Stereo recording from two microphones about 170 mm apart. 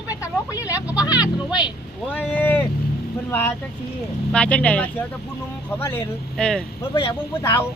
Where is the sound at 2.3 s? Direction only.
10° left (ahead or behind).